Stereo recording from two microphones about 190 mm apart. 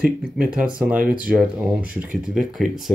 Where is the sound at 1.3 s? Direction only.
5° right (ahead or behind).